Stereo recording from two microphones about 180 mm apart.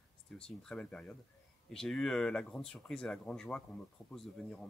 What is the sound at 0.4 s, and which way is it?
Speech, 5° left (ahead or behind).